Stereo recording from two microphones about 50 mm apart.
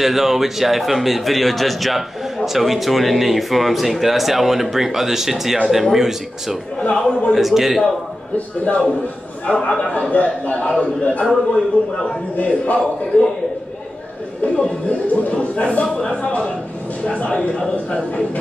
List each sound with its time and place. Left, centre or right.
0.0 s a man's voice: centre
6.8 s a man's voice: centre
7.3 s a man's voice: centre
8.4 s a man's voice: left
12.4 s a man's voice: left
14.4 s a man's voice: left
17.3 s a man's voice: centre
17.6 s a man's voice: left